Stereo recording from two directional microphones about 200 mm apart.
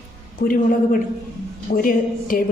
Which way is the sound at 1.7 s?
45° left (ahead or behind).